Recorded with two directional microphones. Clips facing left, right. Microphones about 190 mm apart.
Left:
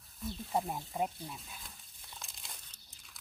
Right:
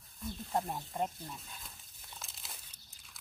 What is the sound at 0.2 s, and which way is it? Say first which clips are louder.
Snake: left 1 dB; centre (ahead or behind).